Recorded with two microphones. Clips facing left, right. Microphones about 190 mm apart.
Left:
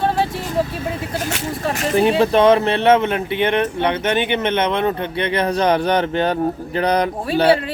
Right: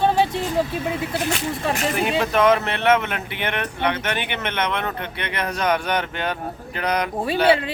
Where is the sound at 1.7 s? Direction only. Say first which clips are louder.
Left 7 dB; 35° left (ahead or behind).